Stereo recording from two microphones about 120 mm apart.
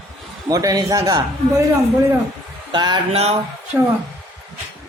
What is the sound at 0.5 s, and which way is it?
Speech, 30° right (ahead or behind).